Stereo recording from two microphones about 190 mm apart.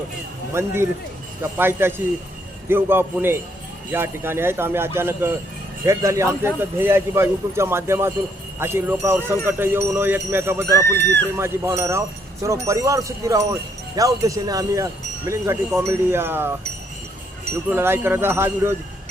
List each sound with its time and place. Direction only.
0.5 s a man's voice: 15° right (ahead or behind)
17.7 s a man's voice: 10° right (ahead or behind)